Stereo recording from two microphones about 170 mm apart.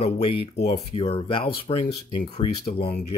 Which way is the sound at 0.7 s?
30° left (ahead or behind).